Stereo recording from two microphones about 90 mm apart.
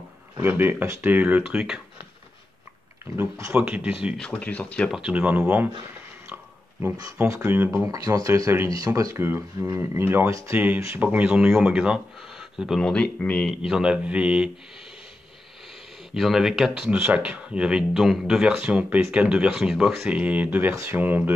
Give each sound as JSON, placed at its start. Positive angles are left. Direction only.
{"t": 0.4, "sound": "speech", "side_deg": -25}
{"t": 3.2, "sound": "speech", "side_deg": -35}
{"t": 3.5, "sound": "speech", "side_deg": -15}
{"t": 4.2, "sound": "speech", "side_deg": 15}
{"t": 4.9, "sound": "speech", "side_deg": -10}
{"t": 7.2, "sound": "speech", "side_deg": -25}
{"t": 7.8, "sound": "speech", "side_deg": -40}
{"t": 9.1, "sound": "speech", "side_deg": -25}
{"t": 11.0, "sound": "speech", "side_deg": -20}
{"t": 12.8, "sound": "speech", "side_deg": 10}
{"t": 13.5, "sound": "speech", "side_deg": -5}
{"t": 16.1, "sound": "speech", "side_deg": -5}